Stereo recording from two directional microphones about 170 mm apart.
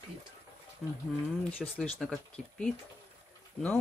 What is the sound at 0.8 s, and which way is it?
Speech, 5° left (ahead or behind).